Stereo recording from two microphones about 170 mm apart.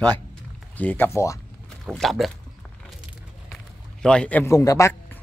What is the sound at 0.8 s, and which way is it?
Speech, 10° left (ahead or behind).